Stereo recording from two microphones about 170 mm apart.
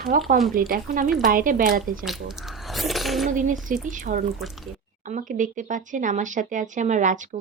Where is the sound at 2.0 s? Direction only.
Centre (ahead or behind).